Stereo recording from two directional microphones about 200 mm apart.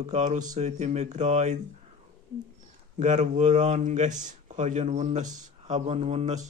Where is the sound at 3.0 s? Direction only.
35° right (ahead or behind).